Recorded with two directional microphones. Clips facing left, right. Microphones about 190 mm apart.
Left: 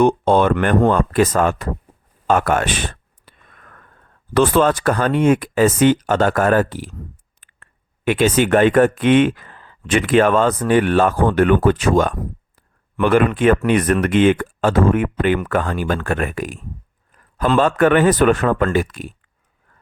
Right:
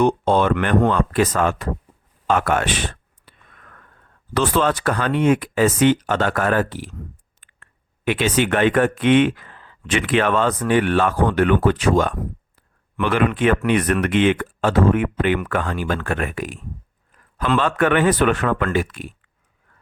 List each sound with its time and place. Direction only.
0.0 s speech: 50° left (ahead or behind)
0.5 s speech: 40° left (ahead or behind)
2.2 s a sound: 45° left (ahead or behind)
4.4 s speech: 50° left (ahead or behind)